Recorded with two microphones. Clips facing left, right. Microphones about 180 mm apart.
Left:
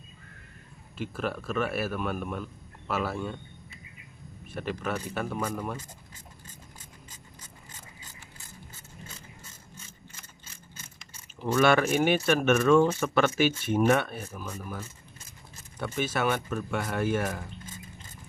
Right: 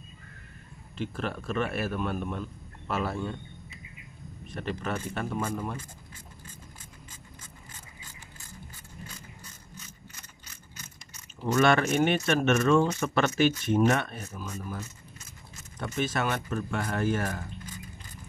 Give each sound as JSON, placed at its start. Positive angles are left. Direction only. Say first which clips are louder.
{"t": 0.9, "sound": "speech", "louder": "left 1 dB", "side_deg": 5}
{"t": 4.5, "sound": "speech", "louder": "left 1 dB", "side_deg": 5}
{"t": 11.6, "sound": "speech", "louder": "left 1 dB", "side_deg": 10}
{"t": 16.0, "sound": "speech", "louder": "left 1 dB", "side_deg": 5}
{"t": 17.6, "sound": "a sound", "louder": "right 1 dB", "side_deg": 25}